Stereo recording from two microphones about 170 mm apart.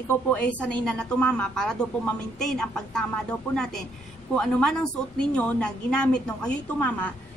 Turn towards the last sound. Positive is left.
turn(degrees=5)  # may be behind; listen again after turning